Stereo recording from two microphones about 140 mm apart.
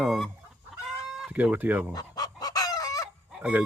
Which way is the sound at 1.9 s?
30° left (ahead or behind).